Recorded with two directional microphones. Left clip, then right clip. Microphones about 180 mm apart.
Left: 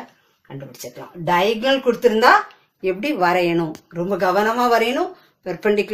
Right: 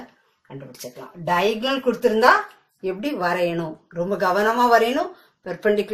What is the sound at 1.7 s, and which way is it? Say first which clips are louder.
Speech: left 4 dB; 30° left (ahead or behind).